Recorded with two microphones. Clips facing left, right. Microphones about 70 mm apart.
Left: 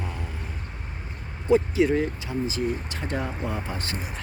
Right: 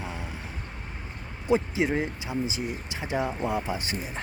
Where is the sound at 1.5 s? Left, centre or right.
Right.